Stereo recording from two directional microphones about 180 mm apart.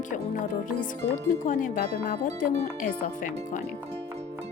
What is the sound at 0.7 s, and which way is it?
Speech, 50° left (ahead or behind).